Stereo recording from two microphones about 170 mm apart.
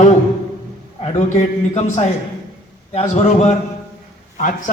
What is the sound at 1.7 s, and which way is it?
A man's voice, 40° left (ahead or behind).